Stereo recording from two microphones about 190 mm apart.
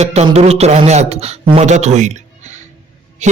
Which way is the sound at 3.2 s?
40° right (ahead or behind).